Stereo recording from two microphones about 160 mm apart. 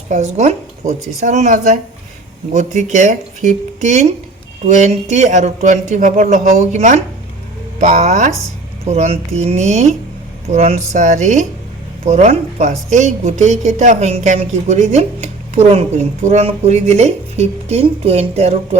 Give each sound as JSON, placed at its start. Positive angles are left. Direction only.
{"t": 0.1, "sound": "a woman's voice", "side_deg": -45}